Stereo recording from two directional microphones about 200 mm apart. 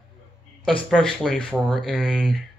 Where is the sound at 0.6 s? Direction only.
5° left (ahead or behind).